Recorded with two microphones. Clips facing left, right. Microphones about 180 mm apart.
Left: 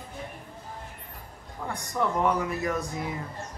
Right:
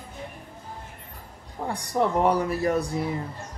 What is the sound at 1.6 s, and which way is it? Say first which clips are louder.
Speech: right 4 dB; 35° right (ahead or behind).